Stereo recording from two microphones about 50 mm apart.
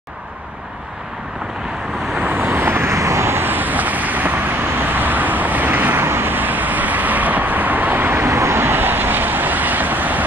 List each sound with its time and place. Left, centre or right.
2.4 s vehicle: right